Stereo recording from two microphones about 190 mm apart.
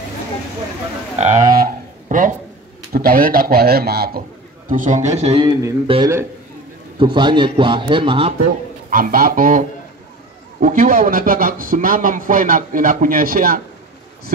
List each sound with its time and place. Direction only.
1.1 s a man's voice: 35° right (ahead or behind)
1.6 s a sound: 45° right (ahead or behind)
2.9 s speech: 50° right (ahead or behind)
4.6 s a man's voice: 45° right (ahead or behind)
5.5 s speech: 15° right (ahead or behind)
7.0 s a man's voice: 25° right (ahead or behind)
8.9 s speech: 45° right (ahead or behind)